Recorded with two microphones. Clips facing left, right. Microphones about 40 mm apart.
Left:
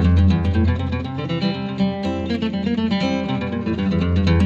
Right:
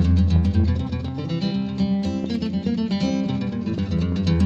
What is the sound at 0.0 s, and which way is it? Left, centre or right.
Music, left.